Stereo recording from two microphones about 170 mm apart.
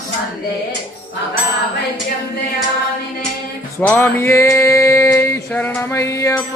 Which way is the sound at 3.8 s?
10° left (ahead or behind).